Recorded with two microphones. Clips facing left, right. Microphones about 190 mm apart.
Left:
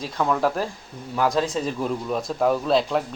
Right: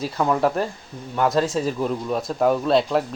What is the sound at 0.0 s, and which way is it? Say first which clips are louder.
Speech: right 2 dB; 5° right (ahead or behind).